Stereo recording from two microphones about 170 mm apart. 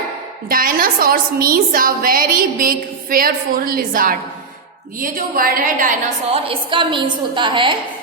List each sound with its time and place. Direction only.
0.4 s a woman's voice: 55° right (ahead or behind)
6.3 s a woman's voice: 30° right (ahead or behind)